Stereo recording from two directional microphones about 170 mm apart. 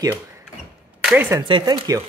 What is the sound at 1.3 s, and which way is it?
Speech, 25° right (ahead or behind).